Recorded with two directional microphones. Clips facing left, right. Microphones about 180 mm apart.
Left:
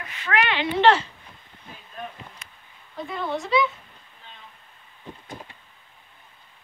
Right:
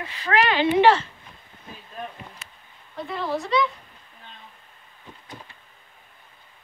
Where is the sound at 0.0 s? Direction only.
35° right (ahead or behind).